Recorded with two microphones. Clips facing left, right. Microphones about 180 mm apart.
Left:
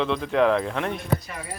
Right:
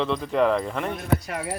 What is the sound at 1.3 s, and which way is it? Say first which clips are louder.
Speech: right 6 dB; 75° right (ahead or behind).